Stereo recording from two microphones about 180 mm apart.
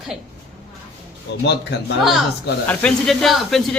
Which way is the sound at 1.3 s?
75° left (ahead or behind).